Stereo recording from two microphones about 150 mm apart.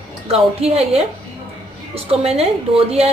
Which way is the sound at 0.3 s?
40° right (ahead or behind).